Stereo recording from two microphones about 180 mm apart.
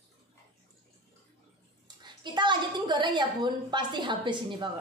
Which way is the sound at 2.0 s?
25° right (ahead or behind).